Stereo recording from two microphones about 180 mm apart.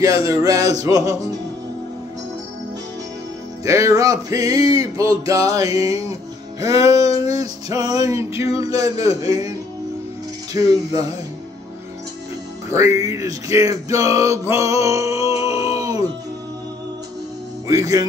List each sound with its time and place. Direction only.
0.3 s music: 20° right (ahead or behind)
3.6 s music: 15° right (ahead or behind)
10.5 s music: 20° right (ahead or behind)
12.6 s music: 15° right (ahead or behind)
15.3 s a sound: 15° right (ahead or behind)
17.6 s music: 20° right (ahead or behind)